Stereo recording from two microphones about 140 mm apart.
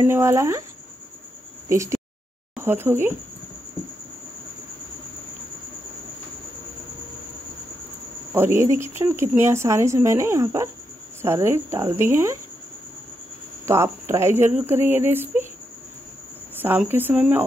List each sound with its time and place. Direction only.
0.0 s speech: 20° right (ahead or behind)
1.7 s speech: 20° right (ahead or behind)
8.3 s speech: 15° right (ahead or behind)
13.7 s speech: 20° right (ahead or behind)
16.6 s speech: 15° right (ahead or behind)